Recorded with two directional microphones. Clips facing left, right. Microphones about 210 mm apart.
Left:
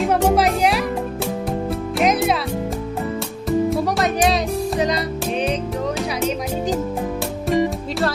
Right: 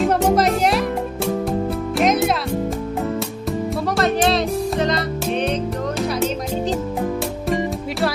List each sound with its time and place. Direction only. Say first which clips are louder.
0.0 s music: even; 5° left (ahead or behind)
4.8 s music: even; 10° left (ahead or behind)
6.0 s music: right 1 dB; centre (ahead or behind)